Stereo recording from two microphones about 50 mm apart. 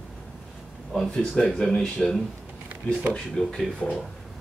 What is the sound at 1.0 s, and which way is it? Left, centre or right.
Speech, centre.